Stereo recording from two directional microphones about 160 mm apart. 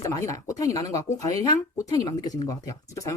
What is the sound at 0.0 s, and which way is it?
Speech, 20° left (ahead or behind).